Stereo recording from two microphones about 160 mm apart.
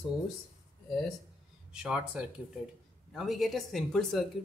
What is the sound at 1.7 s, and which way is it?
Speech, 5° right (ahead or behind).